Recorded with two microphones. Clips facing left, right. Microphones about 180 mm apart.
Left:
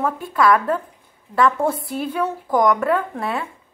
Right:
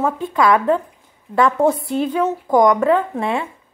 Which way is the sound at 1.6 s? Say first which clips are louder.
Right 5 dB; 25° right (ahead or behind).